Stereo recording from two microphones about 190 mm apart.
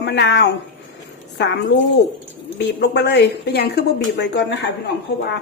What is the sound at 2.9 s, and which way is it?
Speech, 65° left (ahead or behind).